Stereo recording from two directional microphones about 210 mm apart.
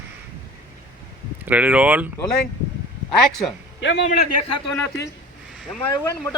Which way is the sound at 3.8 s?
55° left (ahead or behind).